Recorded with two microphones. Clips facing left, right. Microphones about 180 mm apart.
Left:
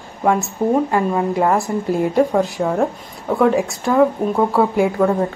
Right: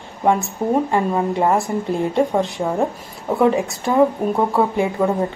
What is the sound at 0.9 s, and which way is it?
A woman's voice, 5° left (ahead or behind).